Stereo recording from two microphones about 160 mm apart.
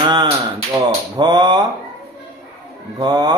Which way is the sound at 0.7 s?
25° right (ahead or behind).